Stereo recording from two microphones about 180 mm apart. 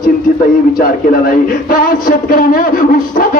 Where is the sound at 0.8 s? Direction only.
55° left (ahead or behind).